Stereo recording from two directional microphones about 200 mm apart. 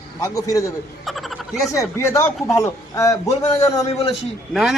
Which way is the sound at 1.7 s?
15° left (ahead or behind).